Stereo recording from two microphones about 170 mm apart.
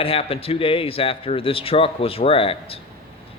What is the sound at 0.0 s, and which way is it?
A man's voice, 35° left (ahead or behind).